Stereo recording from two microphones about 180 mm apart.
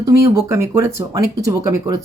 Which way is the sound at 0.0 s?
15° right (ahead or behind).